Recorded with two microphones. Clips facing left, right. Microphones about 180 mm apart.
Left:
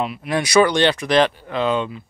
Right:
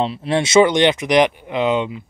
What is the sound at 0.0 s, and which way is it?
Speech, 30° right (ahead or behind).